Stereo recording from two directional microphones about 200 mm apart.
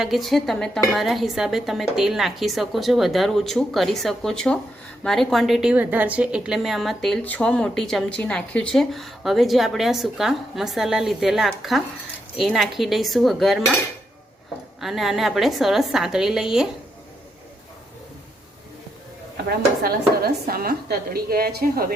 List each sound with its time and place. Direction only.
0.0 s a woman's voice: centre (ahead or behind)
14.8 s a woman's voice: centre (ahead or behind)
19.5 s speech: 50° right (ahead or behind)